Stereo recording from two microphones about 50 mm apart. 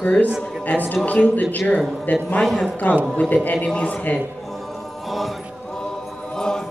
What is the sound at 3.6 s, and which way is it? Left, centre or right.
Speech, left.